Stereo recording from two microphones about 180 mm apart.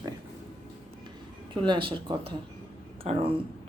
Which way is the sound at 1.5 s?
30° right (ahead or behind).